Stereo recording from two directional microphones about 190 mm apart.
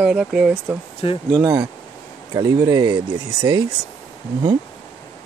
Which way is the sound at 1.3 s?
20° right (ahead or behind).